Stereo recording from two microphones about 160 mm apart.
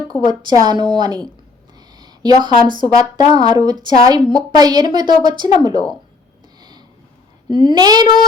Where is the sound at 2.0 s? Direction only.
25° right (ahead or behind).